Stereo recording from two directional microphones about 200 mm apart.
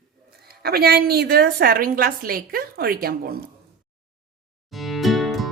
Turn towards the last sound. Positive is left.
turn(degrees=0)  # may be behind; listen again after turning